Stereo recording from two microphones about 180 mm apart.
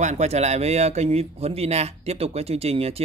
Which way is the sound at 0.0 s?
40° right (ahead or behind).